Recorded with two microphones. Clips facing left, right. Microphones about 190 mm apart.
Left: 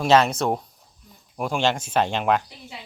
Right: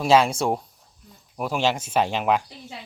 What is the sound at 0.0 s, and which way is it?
Speech, 10° right (ahead or behind).